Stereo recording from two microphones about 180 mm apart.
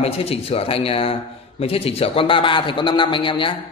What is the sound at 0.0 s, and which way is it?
A man's voice, 35° left (ahead or behind).